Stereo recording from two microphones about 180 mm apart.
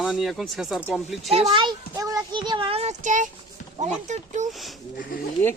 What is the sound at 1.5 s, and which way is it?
A child's voice, 25° right (ahead or behind).